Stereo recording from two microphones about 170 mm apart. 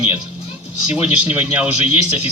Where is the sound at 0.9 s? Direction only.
10° right (ahead or behind).